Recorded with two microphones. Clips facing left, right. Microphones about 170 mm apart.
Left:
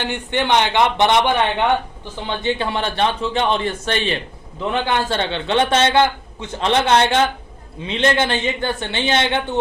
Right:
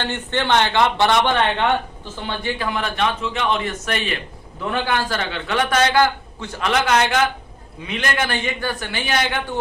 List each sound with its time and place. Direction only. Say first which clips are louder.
0.0 s a man's voice: left 2 dB; 15° left (ahead or behind)